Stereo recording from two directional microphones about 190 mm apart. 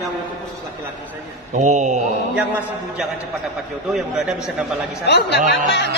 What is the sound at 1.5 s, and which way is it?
Mantra, 40° right (ahead or behind).